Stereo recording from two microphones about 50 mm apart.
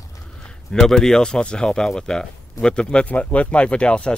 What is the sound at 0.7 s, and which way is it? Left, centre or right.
Speech, centre.